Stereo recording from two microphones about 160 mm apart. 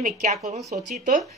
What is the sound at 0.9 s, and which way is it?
Speech, 60° right (ahead or behind).